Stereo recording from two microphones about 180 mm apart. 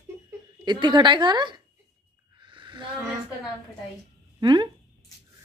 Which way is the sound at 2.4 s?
25° right (ahead or behind).